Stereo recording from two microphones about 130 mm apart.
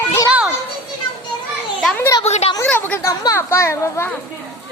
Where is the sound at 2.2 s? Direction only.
55° left (ahead or behind).